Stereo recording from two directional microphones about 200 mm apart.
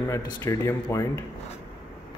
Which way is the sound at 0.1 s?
15° left (ahead or behind).